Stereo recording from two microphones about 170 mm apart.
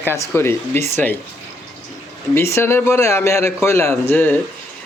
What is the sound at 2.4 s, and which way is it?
A man's voice, 15° left (ahead or behind).